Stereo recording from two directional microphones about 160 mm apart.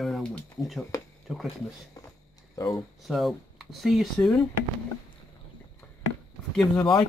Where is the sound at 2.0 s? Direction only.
20° left (ahead or behind).